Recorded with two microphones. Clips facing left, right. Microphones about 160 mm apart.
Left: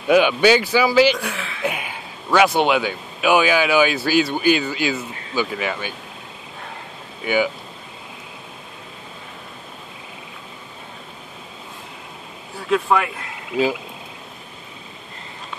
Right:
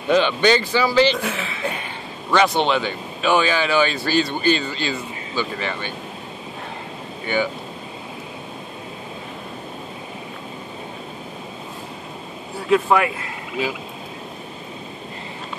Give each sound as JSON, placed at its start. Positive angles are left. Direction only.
{"t": 0.1, "sound": "speech", "side_deg": 10}
{"t": 7.3, "sound": "speech", "side_deg": 5}
{"t": 12.6, "sound": "speech", "side_deg": -5}